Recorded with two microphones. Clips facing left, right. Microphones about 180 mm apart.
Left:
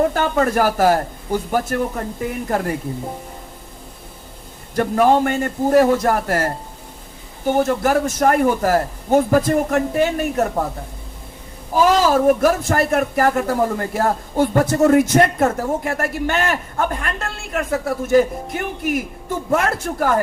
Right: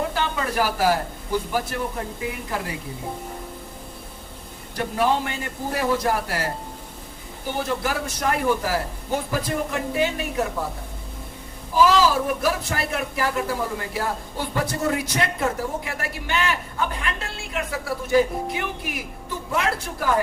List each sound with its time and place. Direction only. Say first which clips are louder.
0.1 s speech: left 8 dB; 50° left (ahead or behind)
4.7 s speech: left 7 dB; 50° left (ahead or behind)
11.7 s speech: left 3 dB; 50° left (ahead or behind)